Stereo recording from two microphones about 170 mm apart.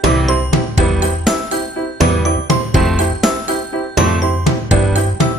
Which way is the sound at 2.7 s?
Centre (ahead or behind).